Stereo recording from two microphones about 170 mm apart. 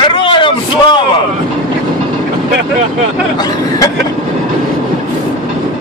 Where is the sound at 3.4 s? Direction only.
20° left (ahead or behind).